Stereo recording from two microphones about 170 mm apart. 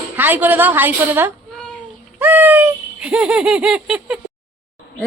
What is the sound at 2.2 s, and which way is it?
Giggle, 10° right (ahead or behind).